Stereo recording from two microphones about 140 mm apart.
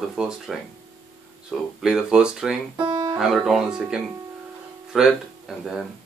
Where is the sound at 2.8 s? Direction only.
30° right (ahead or behind).